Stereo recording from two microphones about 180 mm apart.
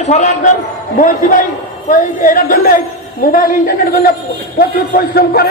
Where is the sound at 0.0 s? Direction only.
40° left (ahead or behind).